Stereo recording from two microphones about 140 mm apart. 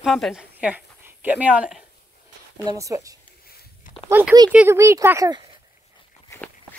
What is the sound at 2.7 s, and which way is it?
Speech, 25° right (ahead or behind).